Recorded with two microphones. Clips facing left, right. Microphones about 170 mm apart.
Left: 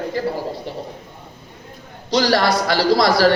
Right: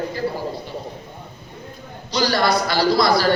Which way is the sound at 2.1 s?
90° left.